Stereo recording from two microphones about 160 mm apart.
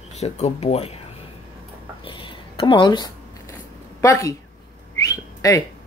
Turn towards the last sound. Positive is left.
turn(degrees=20)  # may be behind; listen again after turning